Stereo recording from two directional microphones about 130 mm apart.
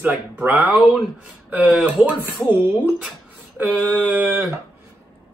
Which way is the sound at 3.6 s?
10° right (ahead or behind).